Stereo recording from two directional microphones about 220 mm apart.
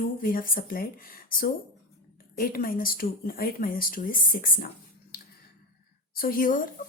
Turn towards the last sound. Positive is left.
turn(degrees=40)  # may be behind; listen again after turning